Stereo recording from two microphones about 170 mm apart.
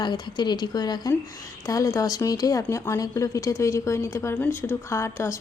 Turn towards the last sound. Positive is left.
turn(degrees=15)  # may be behind; listen again after turning